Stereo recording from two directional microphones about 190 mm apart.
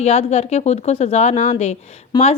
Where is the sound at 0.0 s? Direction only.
35° left (ahead or behind).